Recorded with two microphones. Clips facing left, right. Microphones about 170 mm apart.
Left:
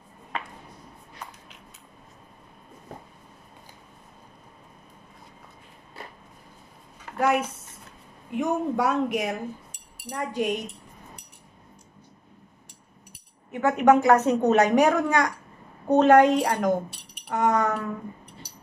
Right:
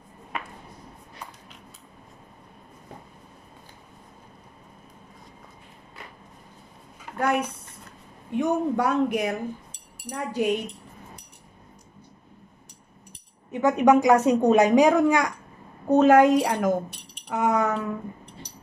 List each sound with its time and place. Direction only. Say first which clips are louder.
7.2 s speech: left 1 dB; 5° left (ahead or behind)
13.5 s a woman's voice: right 1 dB; 15° right (ahead or behind)